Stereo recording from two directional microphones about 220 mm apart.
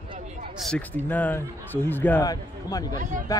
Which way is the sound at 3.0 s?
35° right (ahead or behind).